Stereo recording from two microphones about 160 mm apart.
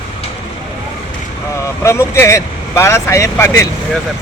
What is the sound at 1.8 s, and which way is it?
A man's voice, 15° left (ahead or behind).